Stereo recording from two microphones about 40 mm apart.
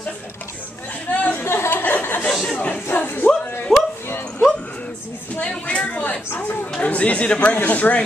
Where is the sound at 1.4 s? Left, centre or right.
Left.